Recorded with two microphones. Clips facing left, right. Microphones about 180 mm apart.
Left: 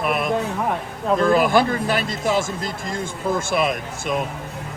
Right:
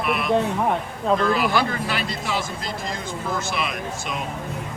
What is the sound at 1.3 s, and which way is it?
Speech, 50° left (ahead or behind).